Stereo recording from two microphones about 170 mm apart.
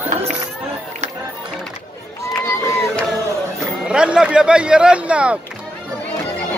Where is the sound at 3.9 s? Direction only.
5° right (ahead or behind).